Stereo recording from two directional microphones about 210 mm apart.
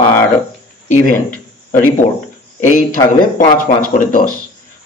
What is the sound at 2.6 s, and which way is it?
Speech, 35° left (ahead or behind).